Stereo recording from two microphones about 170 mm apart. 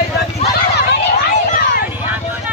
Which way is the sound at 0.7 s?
75° left (ahead or behind).